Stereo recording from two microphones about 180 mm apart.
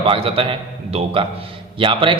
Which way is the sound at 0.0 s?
30° right (ahead or behind).